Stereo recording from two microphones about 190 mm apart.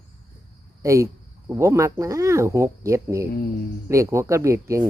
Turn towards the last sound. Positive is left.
turn(degrees=-15)  # may be behind; listen again after turning